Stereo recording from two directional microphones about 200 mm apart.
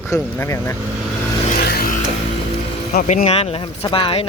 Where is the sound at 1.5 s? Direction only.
50° left (ahead or behind).